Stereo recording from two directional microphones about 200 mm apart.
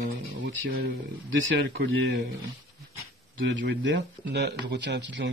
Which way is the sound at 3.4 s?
65° right (ahead or behind).